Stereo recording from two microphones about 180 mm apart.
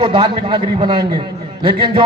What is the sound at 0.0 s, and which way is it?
A man's voice, 30° right (ahead or behind).